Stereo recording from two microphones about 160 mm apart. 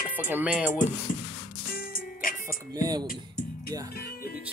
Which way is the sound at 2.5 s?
25° right (ahead or behind).